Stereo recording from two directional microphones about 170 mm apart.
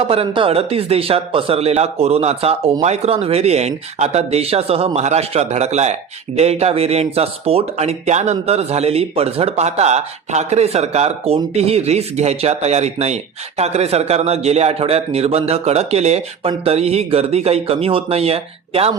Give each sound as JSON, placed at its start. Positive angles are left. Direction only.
{"t": 0.0, "sound": "speech", "side_deg": -35}